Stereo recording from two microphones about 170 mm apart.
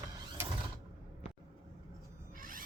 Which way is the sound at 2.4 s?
55° right (ahead or behind).